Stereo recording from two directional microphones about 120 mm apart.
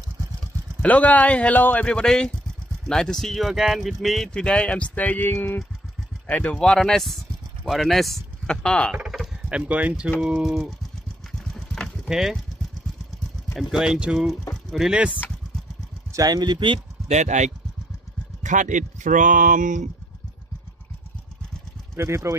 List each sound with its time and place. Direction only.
0.8 s speech: 10° left (ahead or behind)
8.9 s speech: 5° right (ahead or behind)
11.5 s a sound: 5° left (ahead or behind)
13.5 s speech: 5° right (ahead or behind)
16.1 s speech: 30° right (ahead or behind)
17.1 s speech: 80° right
18.4 s speech: 90° right
21.9 s speech: 25° right (ahead or behind)